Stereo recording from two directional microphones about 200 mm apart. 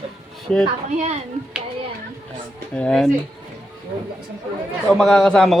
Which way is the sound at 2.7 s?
5° left (ahead or behind).